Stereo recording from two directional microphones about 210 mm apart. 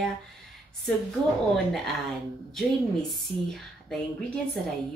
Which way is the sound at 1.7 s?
Centre (ahead or behind).